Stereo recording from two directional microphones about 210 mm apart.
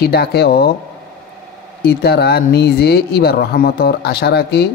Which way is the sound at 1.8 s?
50° left (ahead or behind).